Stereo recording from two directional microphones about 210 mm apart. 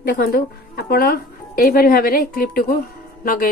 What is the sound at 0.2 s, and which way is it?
A woman's voice, 45° left (ahead or behind).